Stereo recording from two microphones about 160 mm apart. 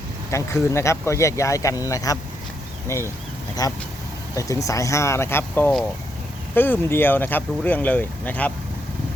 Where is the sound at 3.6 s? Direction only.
20° left (ahead or behind).